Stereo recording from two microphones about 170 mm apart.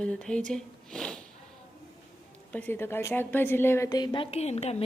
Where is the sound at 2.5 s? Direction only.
10° left (ahead or behind).